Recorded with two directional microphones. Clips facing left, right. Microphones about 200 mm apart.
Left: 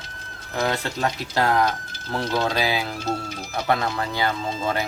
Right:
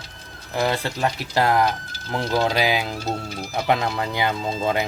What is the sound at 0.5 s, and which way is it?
Speech, 10° right (ahead or behind).